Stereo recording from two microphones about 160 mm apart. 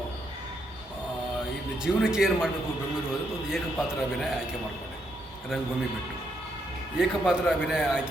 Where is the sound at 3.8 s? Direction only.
5° right (ahead or behind).